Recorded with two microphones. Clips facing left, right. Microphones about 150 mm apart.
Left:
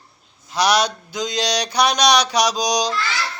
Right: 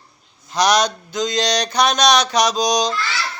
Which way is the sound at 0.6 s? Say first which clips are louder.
Right 1 dB; 5° left (ahead or behind).